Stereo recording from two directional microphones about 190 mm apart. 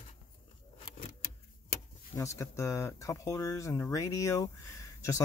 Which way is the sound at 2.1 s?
15° left (ahead or behind).